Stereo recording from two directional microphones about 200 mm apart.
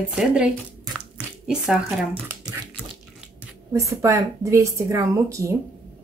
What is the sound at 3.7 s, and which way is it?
Speech, 15° right (ahead or behind).